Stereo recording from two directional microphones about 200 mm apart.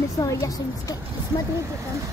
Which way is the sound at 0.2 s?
15° left (ahead or behind).